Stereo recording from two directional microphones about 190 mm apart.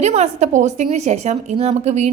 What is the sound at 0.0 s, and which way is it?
A woman's voice, 35° right (ahead or behind).